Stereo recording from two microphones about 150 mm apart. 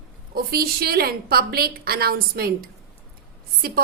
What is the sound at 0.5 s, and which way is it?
A woman's voice, 90° right.